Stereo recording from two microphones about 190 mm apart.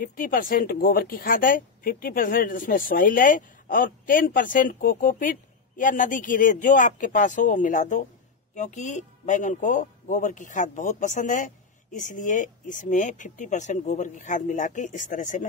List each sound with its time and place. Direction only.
0.0 s a woman's voice: 50° left (ahead or behind)